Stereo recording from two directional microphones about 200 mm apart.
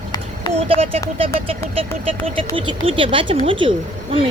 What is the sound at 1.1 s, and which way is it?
Speech, 30° right (ahead or behind).